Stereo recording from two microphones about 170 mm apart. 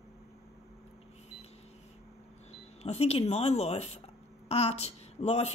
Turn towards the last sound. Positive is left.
turn(degrees=40)  # may be behind; listen again after turning